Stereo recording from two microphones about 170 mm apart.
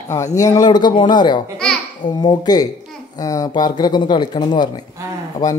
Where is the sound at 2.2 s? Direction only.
25° left (ahead or behind).